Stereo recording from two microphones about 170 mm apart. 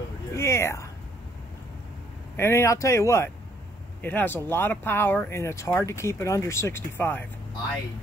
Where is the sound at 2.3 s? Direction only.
15° left (ahead or behind).